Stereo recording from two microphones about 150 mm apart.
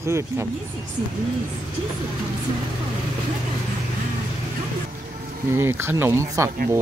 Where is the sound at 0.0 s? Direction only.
20° right (ahead or behind).